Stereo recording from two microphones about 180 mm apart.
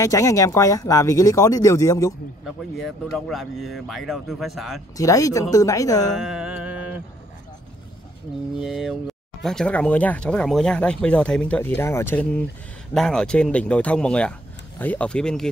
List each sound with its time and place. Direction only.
0.0 s speech: 20° left (ahead or behind)
2.4 s speech: centre (ahead or behind)
4.9 s speech: 20° left (ahead or behind)
6.1 s music: 5° right (ahead or behind)
8.5 s speech: 5° right (ahead or behind)